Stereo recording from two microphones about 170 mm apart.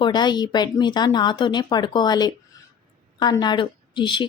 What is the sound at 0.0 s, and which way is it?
A woman's voice, 25° left (ahead or behind).